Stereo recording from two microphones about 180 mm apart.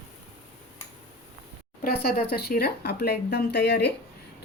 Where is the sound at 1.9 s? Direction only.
60° left (ahead or behind).